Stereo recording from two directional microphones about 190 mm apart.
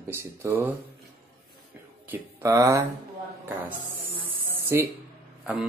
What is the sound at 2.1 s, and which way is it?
Speech, 15° right (ahead or behind).